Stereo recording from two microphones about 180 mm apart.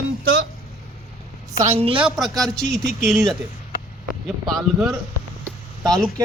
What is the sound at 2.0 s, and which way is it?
A man's voice, 5° right (ahead or behind).